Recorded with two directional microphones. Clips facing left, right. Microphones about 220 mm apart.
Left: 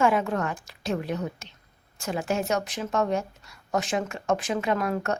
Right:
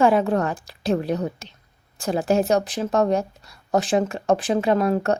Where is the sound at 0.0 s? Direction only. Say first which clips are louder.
Right 5 dB; 35° right (ahead or behind).